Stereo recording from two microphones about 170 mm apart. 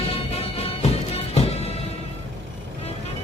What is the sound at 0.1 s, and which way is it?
Music, 35° left (ahead or behind).